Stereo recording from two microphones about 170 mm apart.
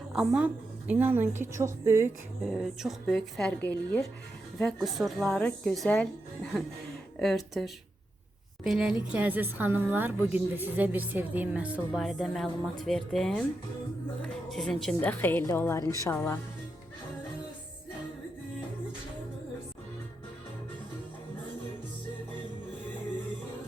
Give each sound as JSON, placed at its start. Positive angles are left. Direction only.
{"t": 0.1, "sound": "speech", "side_deg": -5}
{"t": 2.5, "sound": "speech", "side_deg": 0}
{"t": 14.5, "sound": "a woman's voice", "side_deg": 0}